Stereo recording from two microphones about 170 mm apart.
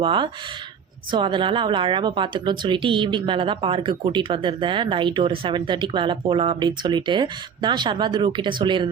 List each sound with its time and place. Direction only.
0.0 s speech: 30° right (ahead or behind)